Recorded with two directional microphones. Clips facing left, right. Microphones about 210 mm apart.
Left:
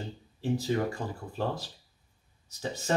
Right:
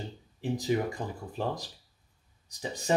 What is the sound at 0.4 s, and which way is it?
Speech, 15° right (ahead or behind).